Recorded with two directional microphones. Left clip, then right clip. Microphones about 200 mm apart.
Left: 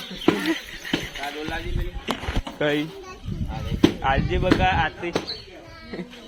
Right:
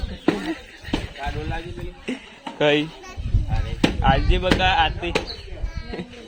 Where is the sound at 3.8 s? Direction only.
25° right (ahead or behind).